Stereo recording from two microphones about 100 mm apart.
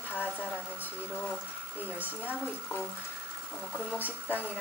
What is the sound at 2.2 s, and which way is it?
Speech, 20° left (ahead or behind).